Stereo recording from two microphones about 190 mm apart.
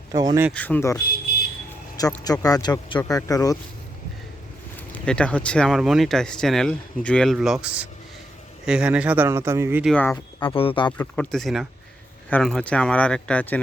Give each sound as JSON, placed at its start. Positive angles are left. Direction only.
{"t": 0.1, "sound": "speech", "side_deg": -20}
{"t": 0.5, "sound": "speech", "side_deg": 10}
{"t": 2.2, "sound": "speech", "side_deg": 20}
{"t": 4.9, "sound": "speech", "side_deg": 5}
{"t": 9.9, "sound": "speech", "side_deg": 5}
{"t": 10.4, "sound": "speech", "side_deg": 30}
{"t": 10.9, "sound": "speech", "side_deg": 10}